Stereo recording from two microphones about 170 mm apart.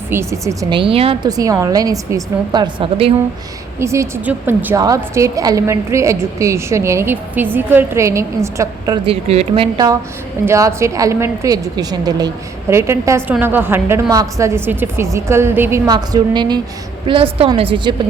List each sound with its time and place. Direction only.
0.1 s a woman's voice: 15° right (ahead or behind); by 1.3 s 35° right (ahead or behind)
1.3 s a woman's voice: 20° right (ahead or behind)
3.8 s a woman's voice: 15° right (ahead or behind)
9.0 s speech: 35° right (ahead or behind)
9.7 s a woman's voice: 20° right (ahead or behind)
15.9 s a woman's voice: 25° right (ahead or behind)